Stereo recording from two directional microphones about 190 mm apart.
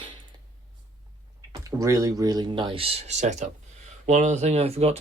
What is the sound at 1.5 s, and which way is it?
Speech, 15° right (ahead or behind).